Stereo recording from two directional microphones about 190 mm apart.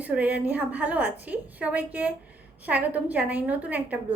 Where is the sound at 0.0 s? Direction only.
10° right (ahead or behind).